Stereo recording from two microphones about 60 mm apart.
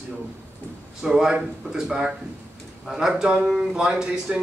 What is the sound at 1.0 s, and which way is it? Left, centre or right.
A man's voice, centre.